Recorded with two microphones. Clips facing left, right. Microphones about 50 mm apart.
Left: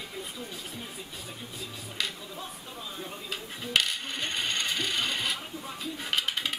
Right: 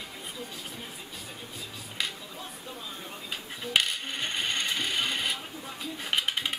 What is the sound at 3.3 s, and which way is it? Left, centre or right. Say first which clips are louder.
Ratchet: right 1 dB; centre.